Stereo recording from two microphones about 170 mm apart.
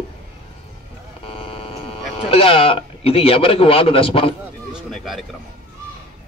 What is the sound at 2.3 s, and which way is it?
A man's voice, 35° left (ahead or behind).